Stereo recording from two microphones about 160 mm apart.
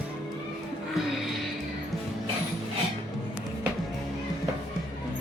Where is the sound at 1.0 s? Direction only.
Centre (ahead or behind).